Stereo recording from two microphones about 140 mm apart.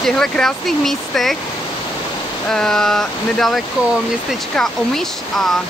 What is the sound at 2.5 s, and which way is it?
Speech, 5° left (ahead or behind).